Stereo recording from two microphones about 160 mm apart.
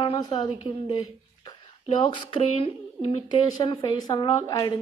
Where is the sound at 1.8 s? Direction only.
35° left (ahead or behind).